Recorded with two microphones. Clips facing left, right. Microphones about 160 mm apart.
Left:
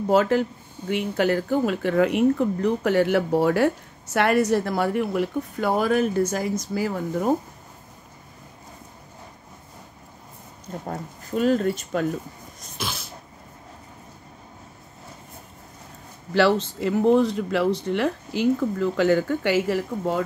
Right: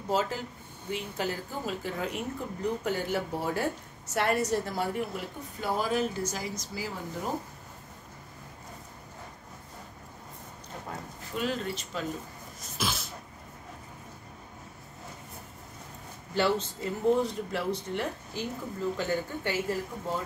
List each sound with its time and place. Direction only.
0.1 s a woman's voice: 65° left (ahead or behind)
10.9 s speech: 45° left (ahead or behind)
12.7 s a sound: centre (ahead or behind)
16.3 s speech: 90° left